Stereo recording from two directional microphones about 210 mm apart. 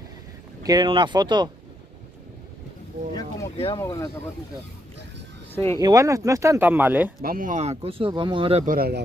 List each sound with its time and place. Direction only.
0.7 s speech: 20° right (ahead or behind)
3.4 s speech: 25° left (ahead or behind)
5.5 s speech: 10° left (ahead or behind)
5.8 s speech: 15° right (ahead or behind)
7.2 s speech: 45° right (ahead or behind); by 8.6 s 25° right (ahead or behind)
8.6 s speech: 45° right (ahead or behind)